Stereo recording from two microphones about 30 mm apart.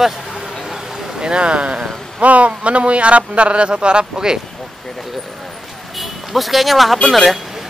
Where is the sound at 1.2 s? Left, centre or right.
Right.